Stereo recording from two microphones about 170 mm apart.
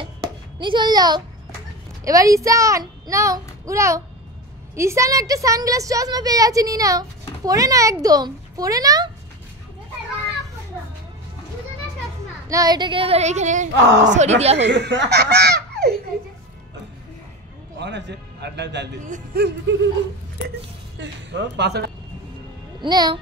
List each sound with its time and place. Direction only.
0.2 s a sound: 25° right (ahead or behind)
2.0 s a woman's voice: 20° right (ahead or behind)
12.4 s female singing: 20° right (ahead or behind); by 13.7 s 45° right (ahead or behind)
13.7 s speech: 90° right
14.0 s speech: 45° right (ahead or behind)
14.6 s speech: 90° right; by 15.9 s 75° right (ahead or behind)
17.7 s a man's voice: 90° right
19.3 s a sound: 65° right (ahead or behind)
21.0 s speech: 90° right; by 21.9 s 75° right (ahead or behind)
22.8 s a woman's voice: 25° right (ahead or behind)